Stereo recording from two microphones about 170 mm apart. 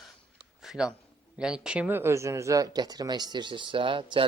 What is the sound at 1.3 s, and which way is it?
Speech, 5° right (ahead or behind).